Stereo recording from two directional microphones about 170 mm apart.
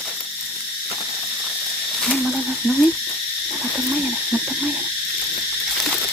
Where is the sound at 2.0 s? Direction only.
Centre (ahead or behind).